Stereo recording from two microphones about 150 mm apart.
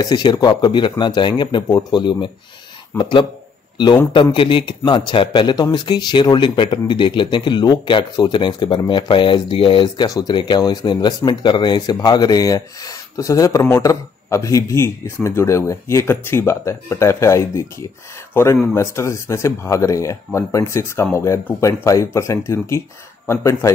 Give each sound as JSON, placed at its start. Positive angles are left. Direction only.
{"t": 0.0, "sound": "speech", "side_deg": 30}
{"t": 10.0, "sound": "speech", "side_deg": 25}